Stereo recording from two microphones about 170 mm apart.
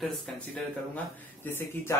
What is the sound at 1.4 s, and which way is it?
Speech, 15° left (ahead or behind).